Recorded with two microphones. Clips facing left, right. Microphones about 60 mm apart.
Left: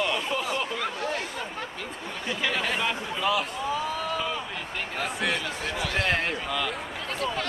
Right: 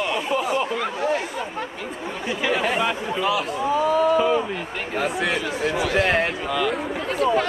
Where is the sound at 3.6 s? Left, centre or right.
Right.